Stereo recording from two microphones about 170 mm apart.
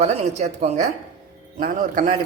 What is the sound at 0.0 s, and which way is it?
Speech, 40° right (ahead or behind).